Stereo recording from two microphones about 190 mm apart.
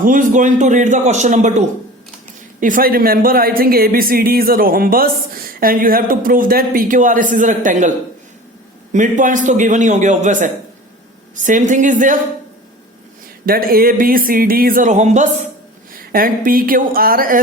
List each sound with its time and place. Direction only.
0.0 s a man's voice: 45° right (ahead or behind)
13.4 s speech: 50° right (ahead or behind)